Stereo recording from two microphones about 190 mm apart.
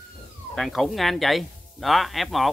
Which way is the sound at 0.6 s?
Centre (ahead or behind).